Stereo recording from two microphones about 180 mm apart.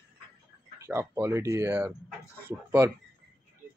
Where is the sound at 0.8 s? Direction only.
15° right (ahead or behind).